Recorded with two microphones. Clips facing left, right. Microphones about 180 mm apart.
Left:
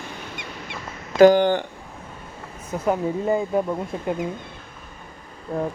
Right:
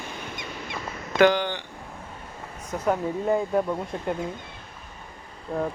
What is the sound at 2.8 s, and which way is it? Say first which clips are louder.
Speech: left 2 dB; 10° left (ahead or behind).